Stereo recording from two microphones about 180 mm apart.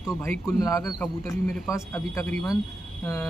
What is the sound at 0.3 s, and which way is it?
A man's voice, 15° left (ahead or behind).